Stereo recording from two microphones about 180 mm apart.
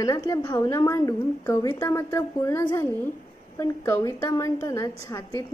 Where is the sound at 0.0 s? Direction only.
20° left (ahead or behind).